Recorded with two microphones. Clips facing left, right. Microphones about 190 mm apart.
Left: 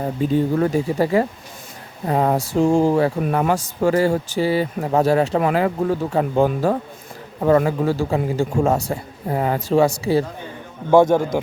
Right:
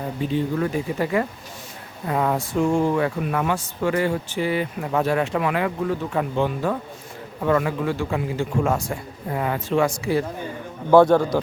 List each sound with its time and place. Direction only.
0.0 s speech: 40° left (ahead or behind)
10.9 s a man's voice: 15° left (ahead or behind)